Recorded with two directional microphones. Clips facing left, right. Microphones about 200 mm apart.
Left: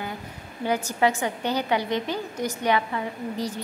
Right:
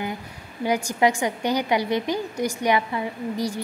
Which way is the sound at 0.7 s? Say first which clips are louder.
Right 2 dB; 15° right (ahead or behind).